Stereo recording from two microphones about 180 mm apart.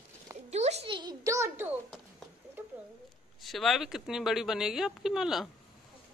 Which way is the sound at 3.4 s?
Centre (ahead or behind).